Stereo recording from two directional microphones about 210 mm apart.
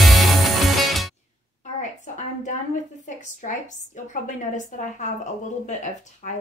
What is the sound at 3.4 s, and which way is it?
A woman's voice, 35° left (ahead or behind).